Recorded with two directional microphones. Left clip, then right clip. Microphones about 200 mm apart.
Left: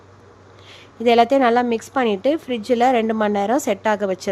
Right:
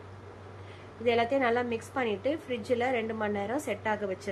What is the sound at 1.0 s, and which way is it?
A woman's voice, 60° left (ahead or behind).